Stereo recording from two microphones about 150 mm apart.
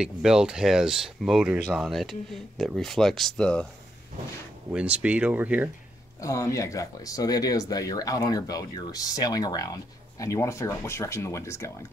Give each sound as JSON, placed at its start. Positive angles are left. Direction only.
{"t": 0.0, "sound": "speech", "side_deg": -5}
{"t": 4.7, "sound": "speech", "side_deg": -10}
{"t": 6.2, "sound": "speech", "side_deg": 20}